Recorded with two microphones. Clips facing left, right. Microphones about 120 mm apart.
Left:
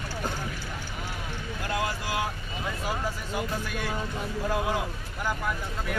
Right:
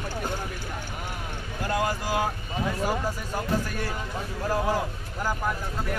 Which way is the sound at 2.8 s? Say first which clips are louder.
Right 4 dB; 45° right (ahead or behind).